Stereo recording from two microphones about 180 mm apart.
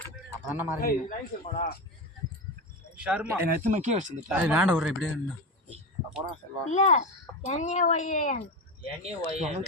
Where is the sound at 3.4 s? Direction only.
45° right (ahead or behind).